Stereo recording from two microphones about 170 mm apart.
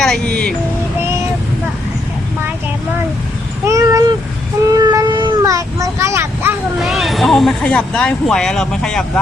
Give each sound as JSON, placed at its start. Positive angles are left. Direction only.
{"t": 0.0, "sound": "music", "side_deg": 5}
{"t": 3.7, "sound": "cat", "side_deg": -20}
{"t": 4.7, "sound": "child singing", "side_deg": -20}
{"t": 6.8, "sound": "speech", "side_deg": 0}